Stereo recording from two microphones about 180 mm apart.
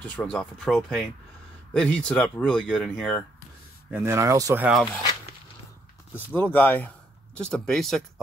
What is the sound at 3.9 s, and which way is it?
Speech, 15° right (ahead or behind).